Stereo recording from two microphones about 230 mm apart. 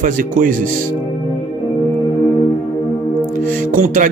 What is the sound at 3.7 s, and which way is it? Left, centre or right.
Music, right.